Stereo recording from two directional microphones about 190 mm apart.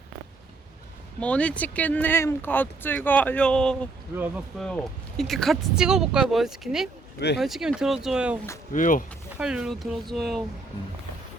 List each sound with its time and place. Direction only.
1.2 s speech: 5° left (ahead or behind)
4.1 s speech: 10° right (ahead or behind)
4.6 s speech: centre (ahead or behind)
8.7 s speech: 45° left (ahead or behind)
9.4 s speech: 5° right (ahead or behind)